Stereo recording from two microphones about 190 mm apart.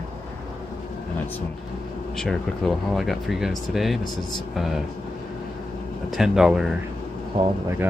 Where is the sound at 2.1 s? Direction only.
Centre (ahead or behind).